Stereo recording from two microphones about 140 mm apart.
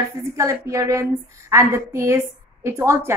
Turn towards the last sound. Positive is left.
turn(degrees=-20)  # may be behind; listen again after turning